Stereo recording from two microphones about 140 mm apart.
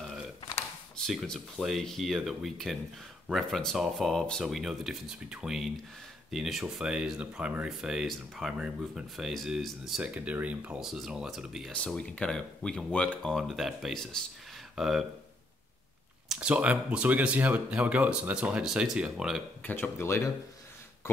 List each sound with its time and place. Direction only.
0.9 s speech: 5° left (ahead or behind)
16.3 s speech: 10° right (ahead or behind)
19.6 s speech: 15° left (ahead or behind)